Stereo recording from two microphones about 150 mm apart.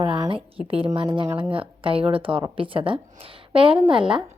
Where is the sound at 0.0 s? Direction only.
35° right (ahead or behind).